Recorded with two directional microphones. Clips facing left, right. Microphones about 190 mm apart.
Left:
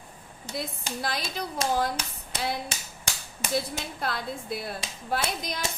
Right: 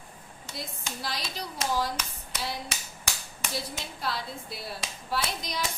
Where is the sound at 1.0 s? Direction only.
55° left (ahead or behind).